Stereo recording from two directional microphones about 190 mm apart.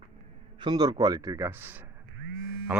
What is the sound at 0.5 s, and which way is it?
A man's voice, 25° right (ahead or behind).